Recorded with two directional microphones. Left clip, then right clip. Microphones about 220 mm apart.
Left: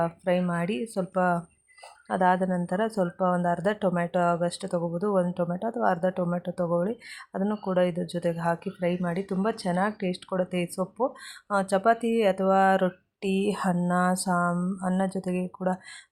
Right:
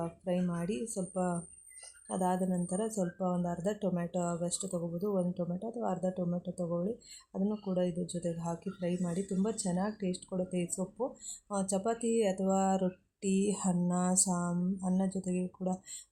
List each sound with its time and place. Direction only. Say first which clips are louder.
0.5 s speech: left 8 dB; 15° left (ahead or behind)
10.8 s speech: left 9 dB; 25° left (ahead or behind)
11.5 s speech: left 11 dB; 10° left (ahead or behind)
14.3 s speech: left 11 dB; 20° left (ahead or behind)
14.8 s speech: left 9 dB; 10° left (ahead or behind)